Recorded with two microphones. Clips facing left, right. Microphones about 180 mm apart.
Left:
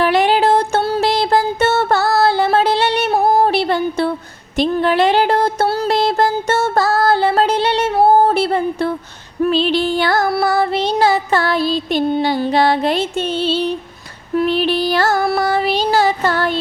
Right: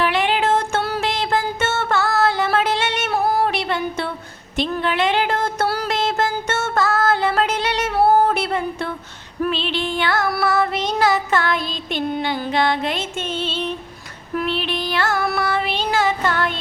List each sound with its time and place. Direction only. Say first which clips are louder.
0.0 s music: left 6 dB; 40° left (ahead or behind)
4.5 s a sound: left 6 dB; 40° left (ahead or behind)
6.5 s music: left 5 dB; 35° left (ahead or behind)
9.4 s child singing: left 7 dB; 40° left (ahead or behind)